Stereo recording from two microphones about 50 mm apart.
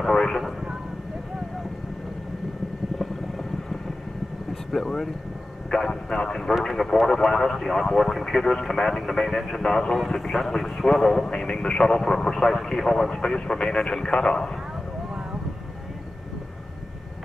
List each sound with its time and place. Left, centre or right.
0.0 s vehicle: centre
4.7 s speech: centre
11.2 s speech: centre